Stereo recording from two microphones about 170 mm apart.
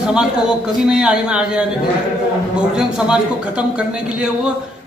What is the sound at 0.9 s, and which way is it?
Speech, 5° right (ahead or behind).